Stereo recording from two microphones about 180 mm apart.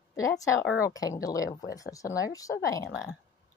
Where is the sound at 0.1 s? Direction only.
20° left (ahead or behind).